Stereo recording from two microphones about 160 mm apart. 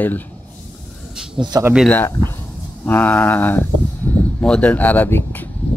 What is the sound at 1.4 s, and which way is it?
Speech, 25° right (ahead or behind).